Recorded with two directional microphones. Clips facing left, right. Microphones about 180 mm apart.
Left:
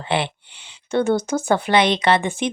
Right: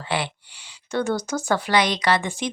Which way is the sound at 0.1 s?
25° left (ahead or behind).